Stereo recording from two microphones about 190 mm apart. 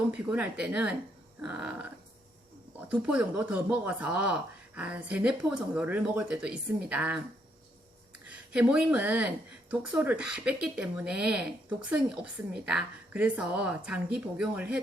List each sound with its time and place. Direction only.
0.1 s speech: 5° right (ahead or behind)
2.9 s speech: 5° right (ahead or behind)
8.3 s speech: 5° right (ahead or behind)